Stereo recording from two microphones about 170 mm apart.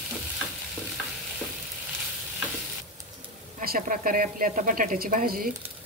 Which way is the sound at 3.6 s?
60° right (ahead or behind).